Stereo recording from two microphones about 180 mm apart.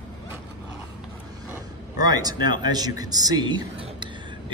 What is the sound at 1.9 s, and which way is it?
Speech, 20° right (ahead or behind).